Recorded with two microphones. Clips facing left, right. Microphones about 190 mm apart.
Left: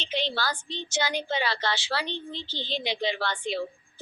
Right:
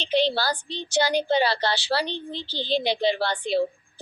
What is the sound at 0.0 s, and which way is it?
Speech, 35° right (ahead or behind).